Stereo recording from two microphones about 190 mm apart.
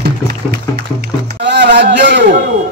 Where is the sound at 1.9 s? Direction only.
45° right (ahead or behind).